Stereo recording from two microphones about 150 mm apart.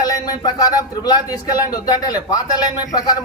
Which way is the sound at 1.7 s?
25° left (ahead or behind).